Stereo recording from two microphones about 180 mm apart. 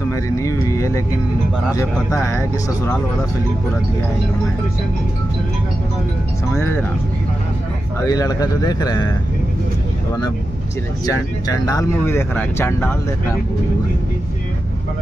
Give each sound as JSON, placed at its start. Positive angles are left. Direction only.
{"t": 0.1, "sound": "speech", "side_deg": 15}
{"t": 6.5, "sound": "speech", "side_deg": 10}
{"t": 8.0, "sound": "speech", "side_deg": 20}
{"t": 11.1, "sound": "speech", "side_deg": 20}